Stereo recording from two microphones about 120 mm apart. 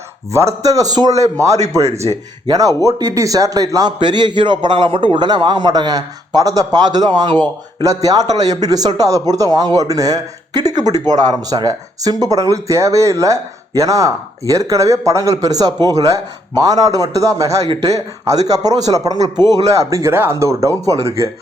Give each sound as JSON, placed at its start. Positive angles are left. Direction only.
{"t": 0.3, "sound": "speech", "side_deg": -25}
{"t": 1.8, "sound": "speech", "side_deg": -65}
{"t": 2.5, "sound": "speech", "side_deg": -30}
{"t": 7.8, "sound": "speech", "side_deg": -30}